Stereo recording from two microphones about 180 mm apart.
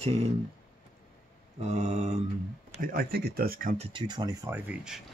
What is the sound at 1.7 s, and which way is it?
Mantra, 40° right (ahead or behind).